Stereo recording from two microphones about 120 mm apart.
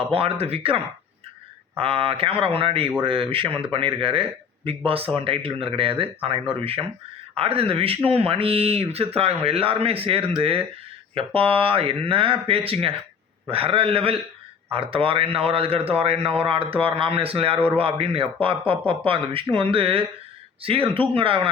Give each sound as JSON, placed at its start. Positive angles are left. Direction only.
{"t": 0.0, "sound": "speech", "side_deg": -55}
{"t": 1.8, "sound": "a man's voice", "side_deg": -50}